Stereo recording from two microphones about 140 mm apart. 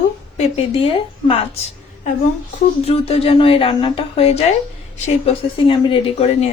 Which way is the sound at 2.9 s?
45° left (ahead or behind).